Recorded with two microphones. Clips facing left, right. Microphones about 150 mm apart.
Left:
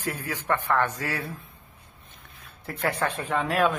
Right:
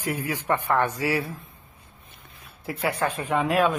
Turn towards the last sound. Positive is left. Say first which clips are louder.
# right 2 dB
turn(degrees=-10)  # may be behind; listen again after turning